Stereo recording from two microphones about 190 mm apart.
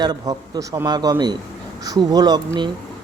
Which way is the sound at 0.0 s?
20° right (ahead or behind).